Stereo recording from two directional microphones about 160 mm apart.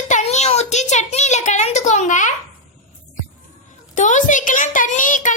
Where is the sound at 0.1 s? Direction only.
45° left (ahead or behind).